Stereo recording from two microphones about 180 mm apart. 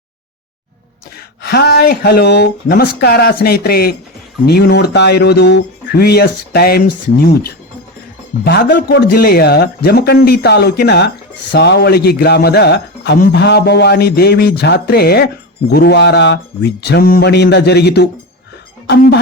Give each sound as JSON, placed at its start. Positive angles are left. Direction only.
{"t": 1.4, "sound": "a man's voice", "side_deg": 60}
{"t": 8.4, "sound": "a man's voice", "side_deg": 65}